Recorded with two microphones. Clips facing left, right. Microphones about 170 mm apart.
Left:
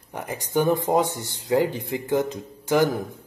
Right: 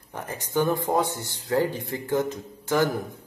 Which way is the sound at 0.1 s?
15° left (ahead or behind).